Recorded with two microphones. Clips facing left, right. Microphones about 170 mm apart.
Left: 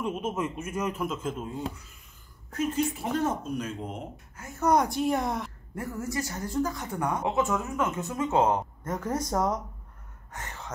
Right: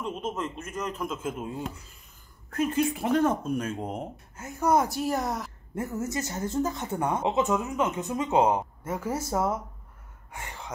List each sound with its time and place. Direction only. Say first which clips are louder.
0.0 s a man's voice: left 2 dB; 10° left (ahead or behind)
2.5 s speech: right 2 dB; 55° right (ahead or behind)
4.6 s speech: even; 5° right (ahead or behind)
5.8 s speech: right 2 dB; 20° right (ahead or behind)